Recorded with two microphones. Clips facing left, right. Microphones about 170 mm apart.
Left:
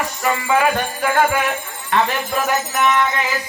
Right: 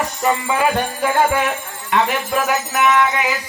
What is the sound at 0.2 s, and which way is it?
Music, 20° right (ahead or behind).